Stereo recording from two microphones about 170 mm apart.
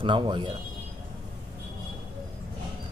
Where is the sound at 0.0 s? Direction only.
30° right (ahead or behind).